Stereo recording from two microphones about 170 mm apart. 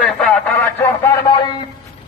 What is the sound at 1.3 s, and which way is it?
Speech, 25° left (ahead or behind).